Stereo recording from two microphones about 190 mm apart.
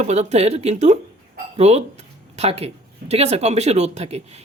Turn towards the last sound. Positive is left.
turn(degrees=-35)  # may be behind; listen again after turning